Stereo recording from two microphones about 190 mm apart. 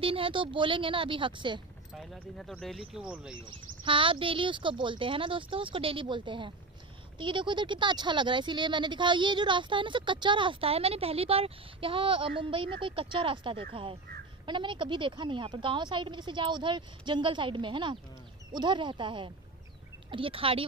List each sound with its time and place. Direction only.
0.0 s speech: 30° right (ahead or behind)
2.0 s speech: centre (ahead or behind)
3.8 s speech: 25° right (ahead or behind)